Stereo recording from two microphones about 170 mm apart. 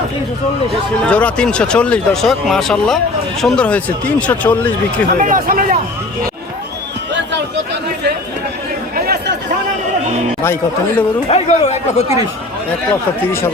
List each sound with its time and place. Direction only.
1.0 s speech: 5° left (ahead or behind)
5.2 s a man's voice: 55° right (ahead or behind)
9.0 s chatter: 65° right (ahead or behind)
10.4 s speech: 15° left (ahead or behind)
11.3 s speech: 40° left (ahead or behind)